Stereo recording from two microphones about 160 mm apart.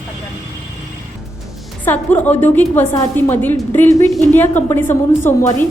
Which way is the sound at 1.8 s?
10° left (ahead or behind).